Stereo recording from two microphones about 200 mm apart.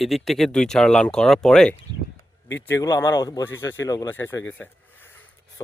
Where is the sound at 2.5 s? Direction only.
15° left (ahead or behind).